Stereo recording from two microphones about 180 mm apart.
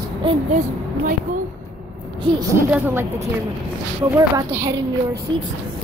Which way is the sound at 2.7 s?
15° right (ahead or behind).